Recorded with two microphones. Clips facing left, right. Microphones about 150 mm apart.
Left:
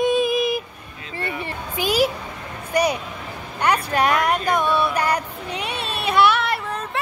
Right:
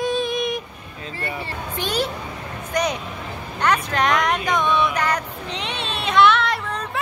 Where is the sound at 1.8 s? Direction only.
5° left (ahead or behind).